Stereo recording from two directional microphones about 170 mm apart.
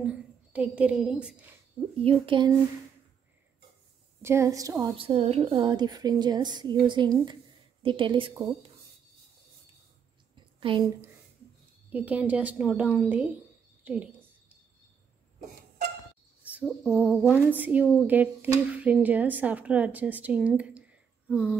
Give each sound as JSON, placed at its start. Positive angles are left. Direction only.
{"t": 0.0, "sound": "a woman's voice", "side_deg": -5}
{"t": 2.0, "sound": "speech", "side_deg": -35}
{"t": 4.2, "sound": "speech", "side_deg": -15}
{"t": 4.9, "sound": "a woman's voice", "side_deg": -35}
{"t": 10.7, "sound": "speech", "side_deg": -30}
{"t": 11.9, "sound": "a woman's voice", "side_deg": -10}
{"t": 16.6, "sound": "a sound", "side_deg": 0}
{"t": 18.0, "sound": "speech", "side_deg": -10}